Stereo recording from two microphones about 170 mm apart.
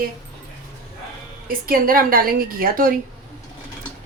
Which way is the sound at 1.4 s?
60° right (ahead or behind).